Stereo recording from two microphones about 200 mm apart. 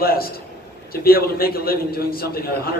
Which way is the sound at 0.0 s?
50° left (ahead or behind).